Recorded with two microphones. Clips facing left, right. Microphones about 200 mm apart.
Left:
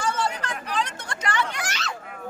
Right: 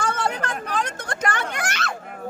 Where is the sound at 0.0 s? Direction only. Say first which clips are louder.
Right 2 dB; 55° right (ahead or behind).